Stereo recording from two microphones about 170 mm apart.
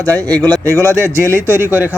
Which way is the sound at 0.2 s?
10° left (ahead or behind).